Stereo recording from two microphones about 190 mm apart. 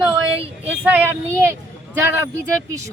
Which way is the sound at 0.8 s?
10° right (ahead or behind).